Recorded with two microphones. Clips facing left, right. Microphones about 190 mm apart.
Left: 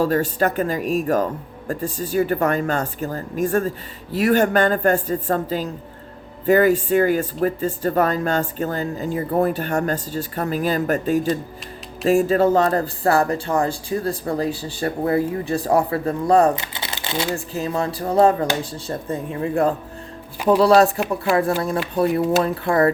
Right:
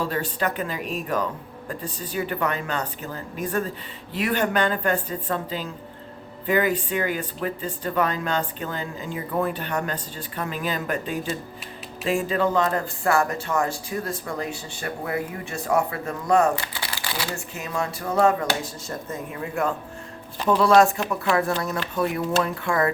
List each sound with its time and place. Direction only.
0.0 s speech: 45° left (ahead or behind)
16.6 s crumpling: 20° left (ahead or behind)
17.3 s speech: 35° left (ahead or behind)